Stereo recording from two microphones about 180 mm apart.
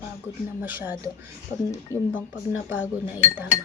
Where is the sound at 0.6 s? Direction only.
10° right (ahead or behind).